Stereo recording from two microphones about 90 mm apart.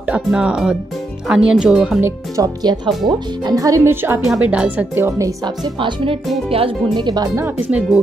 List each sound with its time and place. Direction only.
0.1 s speech: 10° right (ahead or behind)
2.0 s speech: 30° right (ahead or behind)
2.4 s speech: 50° right (ahead or behind)
3.9 s speech: 25° right (ahead or behind)
5.8 s speech: 70° right (ahead or behind)
6.5 s speech: 90° right